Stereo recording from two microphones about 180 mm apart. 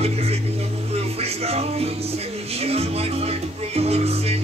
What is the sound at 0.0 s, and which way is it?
Music, 35° right (ahead or behind).